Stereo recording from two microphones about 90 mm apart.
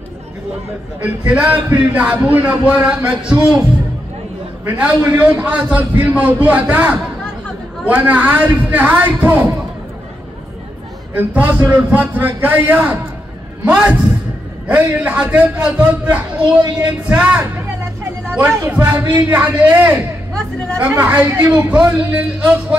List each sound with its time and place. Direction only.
1.0 s a man's voice: 15° right (ahead or behind)
4.6 s a man's voice: 20° right (ahead or behind)
11.1 s a man's voice: 20° right (ahead or behind)
18.7 s a man's voice: 20° right (ahead or behind)